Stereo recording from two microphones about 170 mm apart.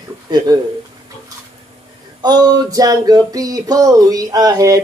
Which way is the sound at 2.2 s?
25° right (ahead or behind).